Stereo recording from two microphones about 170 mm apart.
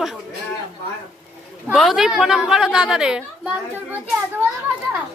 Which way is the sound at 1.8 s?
Centre (ahead or behind).